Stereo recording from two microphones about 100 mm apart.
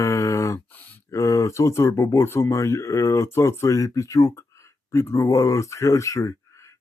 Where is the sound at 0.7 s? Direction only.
20° left (ahead or behind).